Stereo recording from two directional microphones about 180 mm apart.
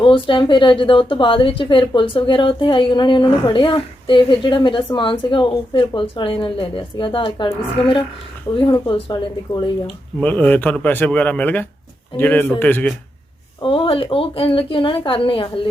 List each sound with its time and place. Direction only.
0.0 s a woman's voice: 30° left (ahead or behind)
9.8 s speech: 5° left (ahead or behind)
13.6 s a woman's voice: 30° left (ahead or behind)